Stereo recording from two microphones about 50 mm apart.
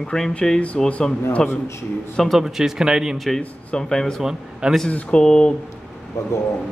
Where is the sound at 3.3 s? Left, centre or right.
Centre.